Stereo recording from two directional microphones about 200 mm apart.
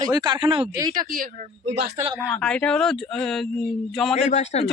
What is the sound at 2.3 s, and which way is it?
Speech, 5° left (ahead or behind).